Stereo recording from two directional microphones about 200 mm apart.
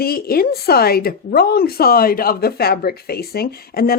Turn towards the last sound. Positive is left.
turn(degrees=50)  # may be behind; listen again after turning